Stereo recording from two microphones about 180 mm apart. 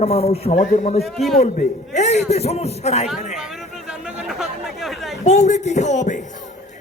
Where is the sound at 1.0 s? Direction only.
Centre (ahead or behind).